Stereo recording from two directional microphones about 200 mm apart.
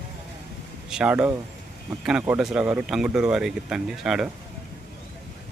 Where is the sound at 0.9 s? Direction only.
5° right (ahead or behind).